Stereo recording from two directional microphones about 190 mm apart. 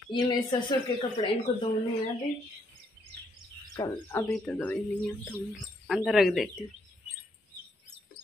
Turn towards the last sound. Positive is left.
turn(degrees=0)  # may be behind; listen again after turning